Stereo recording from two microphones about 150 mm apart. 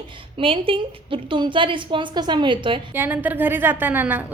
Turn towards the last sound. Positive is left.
turn(degrees=-10)  # may be behind; listen again after turning